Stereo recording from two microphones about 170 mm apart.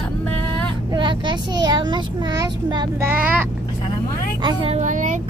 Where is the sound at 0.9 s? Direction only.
25° right (ahead or behind).